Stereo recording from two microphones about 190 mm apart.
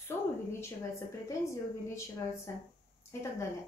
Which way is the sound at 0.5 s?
15° left (ahead or behind).